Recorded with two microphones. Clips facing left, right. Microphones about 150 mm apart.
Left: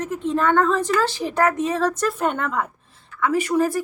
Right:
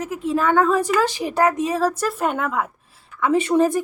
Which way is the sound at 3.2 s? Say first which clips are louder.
Right 3 dB; 25° right (ahead or behind).